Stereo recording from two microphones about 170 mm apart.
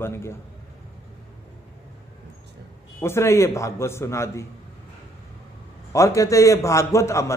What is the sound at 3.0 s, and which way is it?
A man's voice, 15° left (ahead or behind).